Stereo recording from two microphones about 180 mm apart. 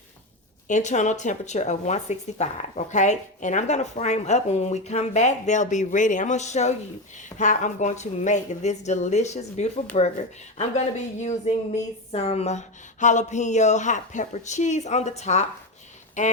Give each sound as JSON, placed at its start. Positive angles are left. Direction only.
{"t": 0.7, "sound": "speech", "side_deg": 40}